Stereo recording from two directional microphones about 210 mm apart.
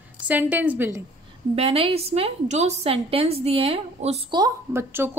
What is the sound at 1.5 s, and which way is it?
A woman's voice, 25° right (ahead or behind).